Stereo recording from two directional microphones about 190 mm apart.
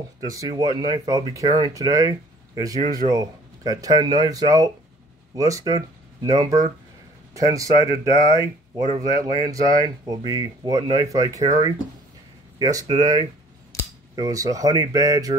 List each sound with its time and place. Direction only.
0.2 s speech: 20° right (ahead or behind)